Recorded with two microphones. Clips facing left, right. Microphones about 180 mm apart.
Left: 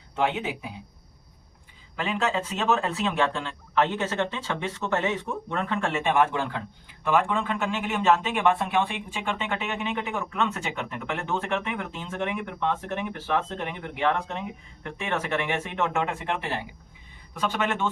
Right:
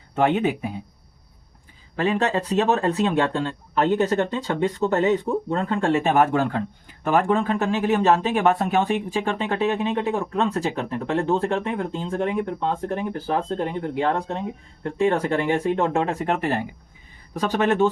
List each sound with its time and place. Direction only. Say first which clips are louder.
0.2 s speech: right 7 dB; 55° right (ahead or behind)
2.0 s speech: right 5 dB; 40° right (ahead or behind)